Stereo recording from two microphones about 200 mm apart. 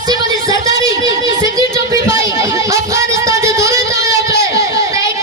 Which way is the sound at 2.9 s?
15° right (ahead or behind).